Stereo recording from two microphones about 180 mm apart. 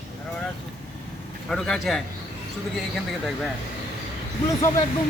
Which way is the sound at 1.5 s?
5° left (ahead or behind).